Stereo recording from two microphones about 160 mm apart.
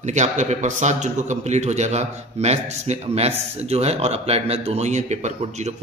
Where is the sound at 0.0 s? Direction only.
50° right (ahead or behind).